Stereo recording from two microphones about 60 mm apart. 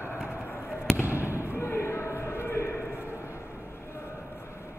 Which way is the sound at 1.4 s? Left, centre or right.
Left.